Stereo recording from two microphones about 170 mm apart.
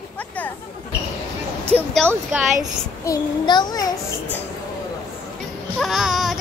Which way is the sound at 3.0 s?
20° left (ahead or behind).